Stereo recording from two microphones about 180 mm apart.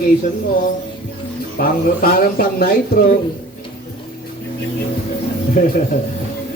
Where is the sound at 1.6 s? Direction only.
55° left (ahead or behind).